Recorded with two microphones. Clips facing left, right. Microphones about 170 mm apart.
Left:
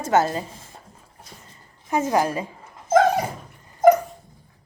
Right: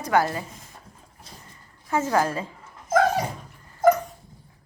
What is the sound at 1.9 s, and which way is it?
Dog, 15° left (ahead or behind).